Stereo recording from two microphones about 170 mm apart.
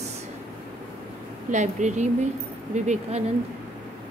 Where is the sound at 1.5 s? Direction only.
45° right (ahead or behind).